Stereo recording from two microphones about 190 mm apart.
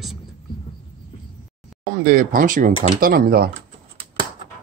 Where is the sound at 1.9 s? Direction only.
45° right (ahead or behind).